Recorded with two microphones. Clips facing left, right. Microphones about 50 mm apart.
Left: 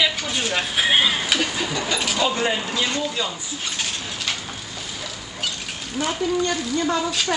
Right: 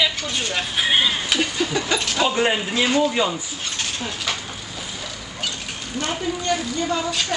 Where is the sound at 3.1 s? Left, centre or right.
Right.